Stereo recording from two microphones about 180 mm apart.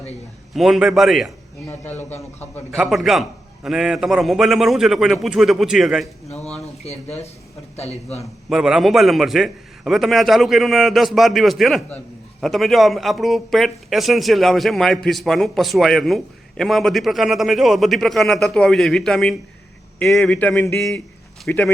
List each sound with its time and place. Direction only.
0.5 s a man's voice: centre (ahead or behind)
1.7 s a sound: 10° left (ahead or behind)
2.7 s a man's voice: centre (ahead or behind)
6.2 s speech: 35° left (ahead or behind)
8.2 s a man's voice: centre (ahead or behind)
20.3 s a sound: 10° left (ahead or behind)
21.4 s speech: 5° left (ahead or behind)